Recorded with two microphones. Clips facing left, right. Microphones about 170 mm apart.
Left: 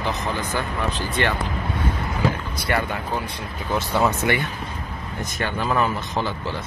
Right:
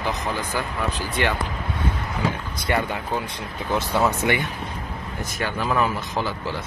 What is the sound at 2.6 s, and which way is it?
Speech, 20° right (ahead or behind).